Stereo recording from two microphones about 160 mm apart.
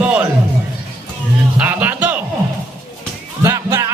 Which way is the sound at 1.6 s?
10° right (ahead or behind).